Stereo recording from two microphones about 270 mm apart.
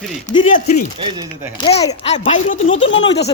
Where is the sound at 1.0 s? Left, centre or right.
Centre.